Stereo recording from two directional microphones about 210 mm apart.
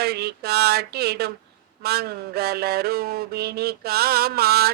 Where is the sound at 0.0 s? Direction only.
50° right (ahead or behind).